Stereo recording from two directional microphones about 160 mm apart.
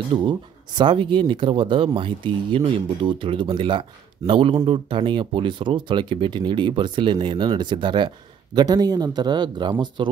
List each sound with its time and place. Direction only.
0.1 s speech: 30° right (ahead or behind)